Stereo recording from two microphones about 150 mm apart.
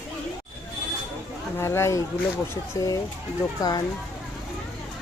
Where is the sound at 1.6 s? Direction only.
15° left (ahead or behind).